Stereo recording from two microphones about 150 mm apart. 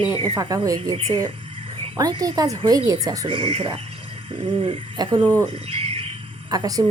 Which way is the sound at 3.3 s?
40° right (ahead or behind).